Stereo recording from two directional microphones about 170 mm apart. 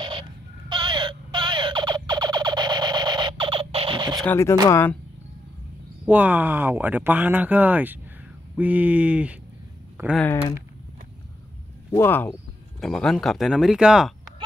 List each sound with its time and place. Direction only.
0.0 s a sound: 30° right (ahead or behind)
4.2 s speech: 15° left (ahead or behind)
6.0 s speech: 10° right (ahead or behind)
11.9 s speech: 15° left (ahead or behind); by 14.1 s 5° right (ahead or behind)